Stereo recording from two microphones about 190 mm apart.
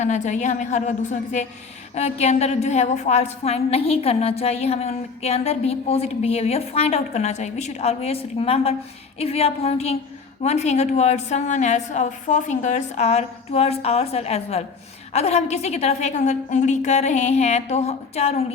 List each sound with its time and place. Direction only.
0.0 s a woman's voice: 40° left (ahead or behind)